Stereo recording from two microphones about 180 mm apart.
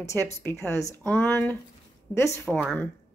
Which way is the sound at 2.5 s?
5° left (ahead or behind).